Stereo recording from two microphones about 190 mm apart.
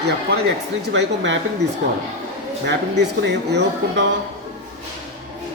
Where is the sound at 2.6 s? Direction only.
65° right (ahead or behind).